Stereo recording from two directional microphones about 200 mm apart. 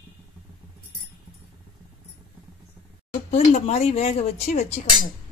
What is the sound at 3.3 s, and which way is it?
A woman's voice, 35° left (ahead or behind).